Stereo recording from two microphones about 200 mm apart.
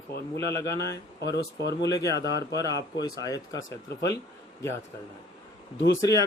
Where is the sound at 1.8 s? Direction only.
15° left (ahead or behind).